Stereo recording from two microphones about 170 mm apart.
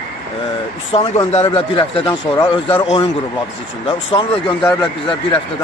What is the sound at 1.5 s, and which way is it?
Speech, 30° left (ahead or behind).